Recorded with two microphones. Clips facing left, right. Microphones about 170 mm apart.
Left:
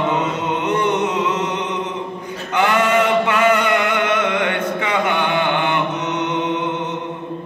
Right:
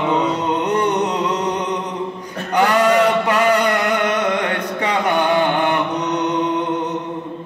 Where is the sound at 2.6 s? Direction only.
35° right (ahead or behind).